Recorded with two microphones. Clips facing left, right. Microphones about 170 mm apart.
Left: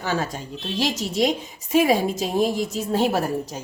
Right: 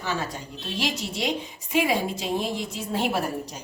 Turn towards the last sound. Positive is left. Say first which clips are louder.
# left 5 dB
turn(degrees=40)  # may be behind; listen again after turning